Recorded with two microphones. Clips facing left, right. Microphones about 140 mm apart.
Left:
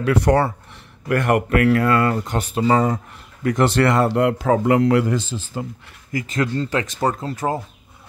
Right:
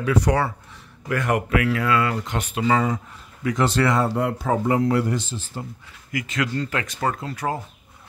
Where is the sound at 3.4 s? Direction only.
60° left (ahead or behind); by 5.7 s 90° left.